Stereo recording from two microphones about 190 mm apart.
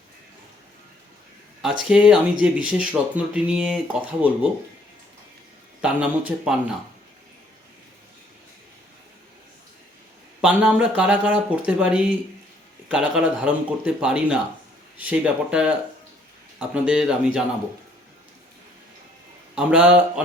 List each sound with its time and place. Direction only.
1.8 s speech: 5° right (ahead or behind)
5.8 s speech: 5° right (ahead or behind)
10.4 s speech: 5° right (ahead or behind)
19.5 s speech: 5° right (ahead or behind)